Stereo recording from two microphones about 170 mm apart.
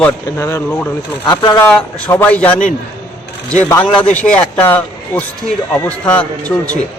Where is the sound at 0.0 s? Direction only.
15° left (ahead or behind).